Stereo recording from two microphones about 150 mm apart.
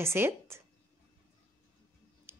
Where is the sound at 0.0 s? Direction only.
15° right (ahead or behind).